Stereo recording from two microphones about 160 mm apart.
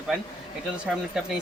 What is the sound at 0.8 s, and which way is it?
Speech, 5° right (ahead or behind).